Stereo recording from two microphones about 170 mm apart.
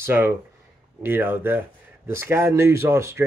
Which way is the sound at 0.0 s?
15° right (ahead or behind).